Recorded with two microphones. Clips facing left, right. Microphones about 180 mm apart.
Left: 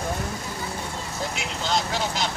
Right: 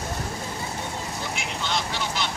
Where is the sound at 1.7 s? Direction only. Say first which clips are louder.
Left 4 dB; 40° left (ahead or behind).